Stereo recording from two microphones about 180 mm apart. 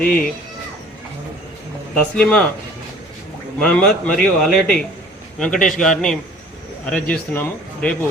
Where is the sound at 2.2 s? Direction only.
5° left (ahead or behind).